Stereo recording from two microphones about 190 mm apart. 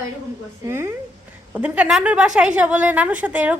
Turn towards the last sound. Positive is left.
turn(degrees=-10)  # may be behind; listen again after turning